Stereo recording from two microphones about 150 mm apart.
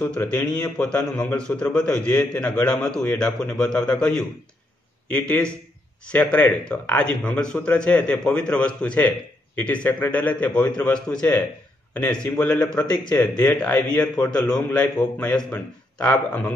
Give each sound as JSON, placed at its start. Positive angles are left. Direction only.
{"t": 0.0, "sound": "a man's voice", "side_deg": 10}